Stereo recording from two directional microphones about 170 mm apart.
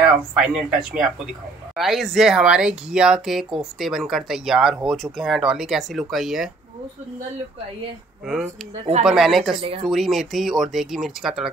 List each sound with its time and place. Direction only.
0.0 s speech: 5° right (ahead or behind)
9.0 s speech: centre (ahead or behind)
9.6 s speech: 35° right (ahead or behind)
9.8 s speech: centre (ahead or behind)